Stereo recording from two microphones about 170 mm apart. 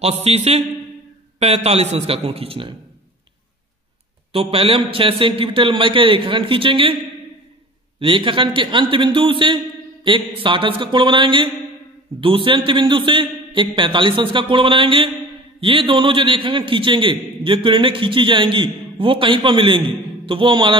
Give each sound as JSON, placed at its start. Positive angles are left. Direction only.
{"t": 0.0, "sound": "a man's voice", "side_deg": -40}
{"t": 4.3, "sound": "a man's voice", "side_deg": -35}
{"t": 8.0, "sound": "a man's voice", "side_deg": -30}